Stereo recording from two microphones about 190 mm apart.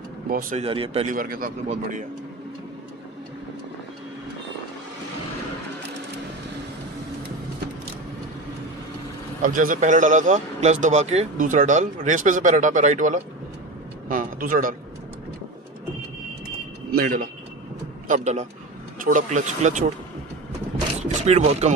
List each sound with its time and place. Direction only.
0.3 s a man's voice: 45° right (ahead or behind)
0.6 s speech: 30° right (ahead or behind)
1.0 s a man's voice: 45° right (ahead or behind)
9.4 s a man's voice: 45° right (ahead or behind)
16.9 s a man's voice: 50° right (ahead or behind)
18.0 s a man's voice: 40° right (ahead or behind)
21.0 s speech: 35° right (ahead or behind)